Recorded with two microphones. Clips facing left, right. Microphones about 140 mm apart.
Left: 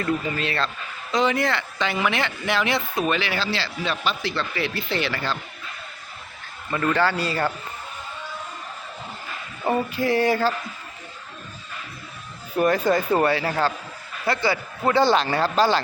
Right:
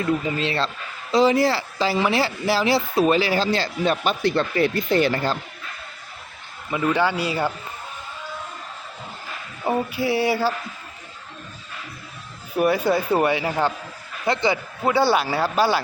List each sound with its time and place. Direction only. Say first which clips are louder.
0.0 s speech: right 2 dB; 20° right (ahead or behind); by 5.4 s 45° right (ahead or behind)
6.7 s speech: right 1 dB; 10° right (ahead or behind)
9.6 s speech: even; 5° right (ahead or behind)
12.5 s speech: even; 10° right (ahead or behind)
14.8 s speech: even; 10° right (ahead or behind)